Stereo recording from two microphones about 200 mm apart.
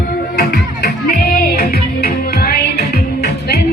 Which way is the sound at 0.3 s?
50° left (ahead or behind).